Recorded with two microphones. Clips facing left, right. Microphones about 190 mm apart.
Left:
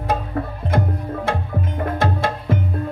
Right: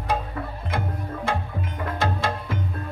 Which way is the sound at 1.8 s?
55° left (ahead or behind).